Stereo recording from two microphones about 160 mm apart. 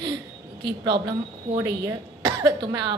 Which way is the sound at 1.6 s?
20° right (ahead or behind).